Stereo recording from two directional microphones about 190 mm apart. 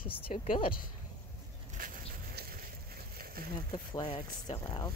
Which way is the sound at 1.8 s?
50° right (ahead or behind).